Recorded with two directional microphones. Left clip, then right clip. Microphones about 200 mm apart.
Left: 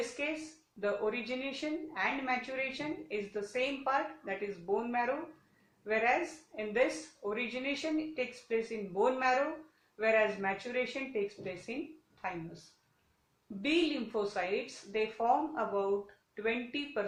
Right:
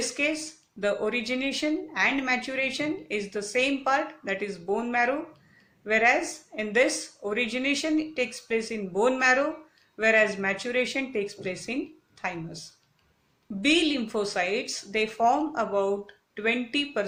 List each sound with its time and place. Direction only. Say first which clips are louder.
0.2 s speech: right 9 dB; 40° right (ahead or behind)
13.6 s speech: right 8 dB; 40° right (ahead or behind)